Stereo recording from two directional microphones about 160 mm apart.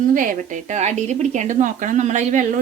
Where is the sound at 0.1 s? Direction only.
55° right (ahead or behind).